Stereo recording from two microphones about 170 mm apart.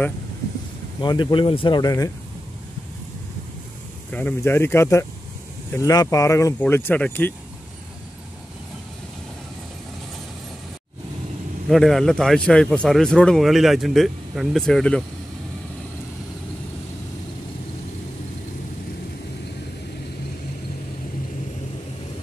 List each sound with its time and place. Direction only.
1.0 s speech: 25° left (ahead or behind)
4.1 s speech: 10° left (ahead or behind)
11.7 s a man's voice: centre (ahead or behind)